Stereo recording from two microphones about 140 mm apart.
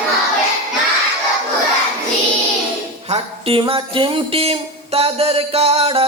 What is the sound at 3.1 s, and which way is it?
Music, 40° right (ahead or behind).